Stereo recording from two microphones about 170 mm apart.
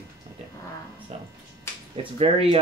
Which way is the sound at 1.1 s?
35° right (ahead or behind).